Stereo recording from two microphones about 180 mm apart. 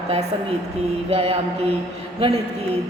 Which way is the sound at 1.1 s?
30° right (ahead or behind).